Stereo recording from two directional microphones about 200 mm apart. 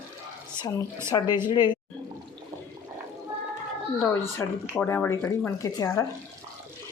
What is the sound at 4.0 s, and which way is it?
Speech, 10° left (ahead or behind).